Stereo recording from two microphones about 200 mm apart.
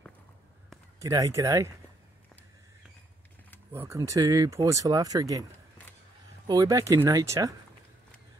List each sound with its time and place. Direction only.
0.9 s speech: 15° right (ahead or behind)
3.7 s speech: 15° right (ahead or behind)
6.4 s speech: 20° right (ahead or behind)